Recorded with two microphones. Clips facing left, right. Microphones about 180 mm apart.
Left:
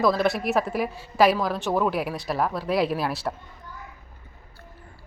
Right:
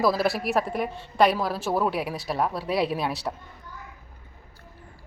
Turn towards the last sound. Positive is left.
turn(degrees=0)  # may be behind; listen again after turning